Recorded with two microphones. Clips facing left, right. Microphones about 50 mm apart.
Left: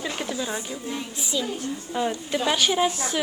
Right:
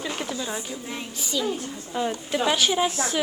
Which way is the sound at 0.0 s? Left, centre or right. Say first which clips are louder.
Left 1 dB; centre.